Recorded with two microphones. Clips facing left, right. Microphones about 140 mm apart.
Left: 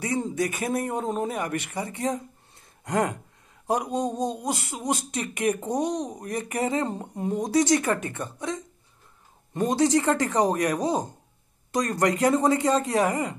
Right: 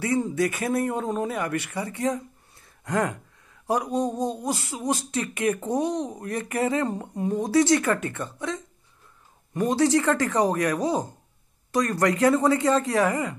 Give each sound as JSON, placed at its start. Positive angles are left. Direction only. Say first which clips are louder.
{"t": 0.0, "sound": "speech", "louder": "right 3 dB", "side_deg": 20}